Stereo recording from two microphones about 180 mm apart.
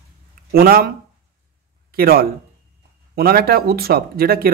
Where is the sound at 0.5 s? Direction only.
55° right (ahead or behind).